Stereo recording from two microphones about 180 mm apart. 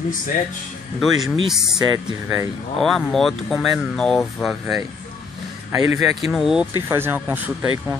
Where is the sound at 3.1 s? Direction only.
Centre (ahead or behind).